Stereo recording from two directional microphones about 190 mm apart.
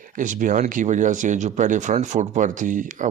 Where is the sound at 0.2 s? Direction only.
45° right (ahead or behind).